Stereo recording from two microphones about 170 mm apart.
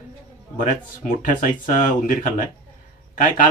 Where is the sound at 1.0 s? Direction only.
50° left (ahead or behind).